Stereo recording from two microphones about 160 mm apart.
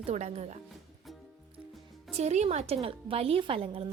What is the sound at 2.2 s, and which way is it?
A woman's voice, 45° right (ahead or behind).